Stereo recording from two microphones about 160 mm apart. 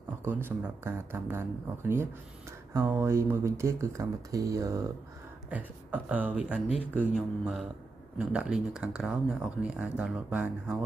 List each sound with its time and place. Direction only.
0.2 s speech: 15° right (ahead or behind)